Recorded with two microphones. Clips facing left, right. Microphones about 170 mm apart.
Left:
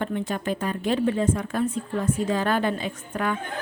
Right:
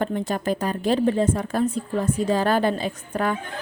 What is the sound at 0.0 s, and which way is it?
A woman's voice, 40° right (ahead or behind).